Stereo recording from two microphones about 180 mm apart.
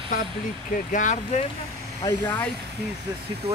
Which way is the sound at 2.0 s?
25° left (ahead or behind).